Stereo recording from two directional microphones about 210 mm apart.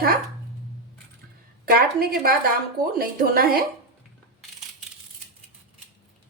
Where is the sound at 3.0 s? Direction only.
45° right (ahead or behind).